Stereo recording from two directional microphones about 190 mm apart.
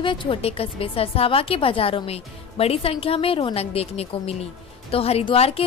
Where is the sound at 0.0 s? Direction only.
25° left (ahead or behind).